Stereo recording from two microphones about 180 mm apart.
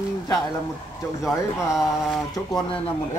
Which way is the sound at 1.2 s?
5° right (ahead or behind).